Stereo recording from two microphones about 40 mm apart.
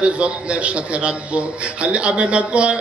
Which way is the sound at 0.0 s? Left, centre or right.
Right.